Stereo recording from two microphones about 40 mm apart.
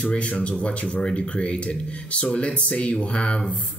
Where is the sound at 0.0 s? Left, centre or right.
Left.